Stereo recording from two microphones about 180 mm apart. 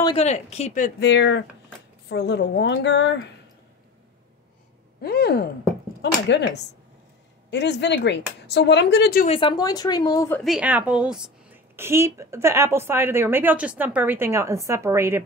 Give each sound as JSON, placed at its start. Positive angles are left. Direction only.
{"t": 0.0, "sound": "speech", "side_deg": 35}
{"t": 0.9, "sound": "speech", "side_deg": 80}
{"t": 2.0, "sound": "speech", "side_deg": 70}
{"t": 5.0, "sound": "a sound", "side_deg": 60}
{"t": 6.2, "sound": "speech", "side_deg": 70}
{"t": 9.3, "sound": "speech", "side_deg": 25}
{"t": 10.4, "sound": "a woman's voice", "side_deg": -5}